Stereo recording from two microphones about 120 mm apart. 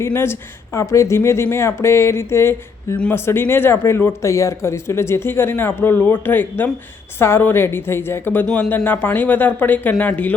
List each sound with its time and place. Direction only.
0.0 s speech: 20° left (ahead or behind)
8.4 s speech: 5° left (ahead or behind)